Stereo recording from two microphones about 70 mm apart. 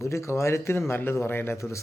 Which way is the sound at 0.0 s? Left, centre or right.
Left.